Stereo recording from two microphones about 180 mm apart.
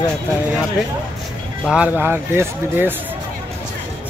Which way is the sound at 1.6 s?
5° right (ahead or behind).